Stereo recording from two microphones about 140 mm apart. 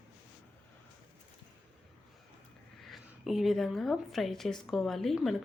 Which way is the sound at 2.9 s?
Centre (ahead or behind).